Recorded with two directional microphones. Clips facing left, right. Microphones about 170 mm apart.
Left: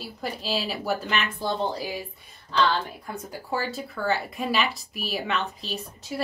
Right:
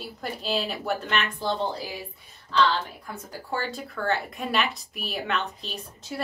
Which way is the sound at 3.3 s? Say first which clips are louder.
Left 1 dB; 10° left (ahead or behind).